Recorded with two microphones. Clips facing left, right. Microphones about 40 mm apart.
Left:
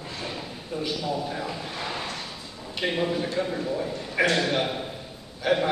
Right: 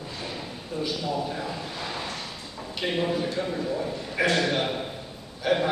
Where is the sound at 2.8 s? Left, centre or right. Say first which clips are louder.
Even; centre.